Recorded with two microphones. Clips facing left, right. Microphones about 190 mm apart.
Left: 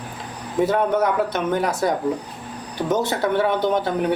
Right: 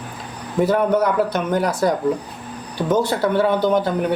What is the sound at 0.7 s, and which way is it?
Speech, 25° left (ahead or behind).